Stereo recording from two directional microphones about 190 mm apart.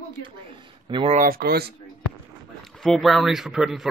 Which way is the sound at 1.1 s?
45° right (ahead or behind).